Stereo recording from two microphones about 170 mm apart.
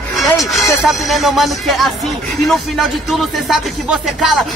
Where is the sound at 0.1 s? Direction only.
Centre (ahead or behind).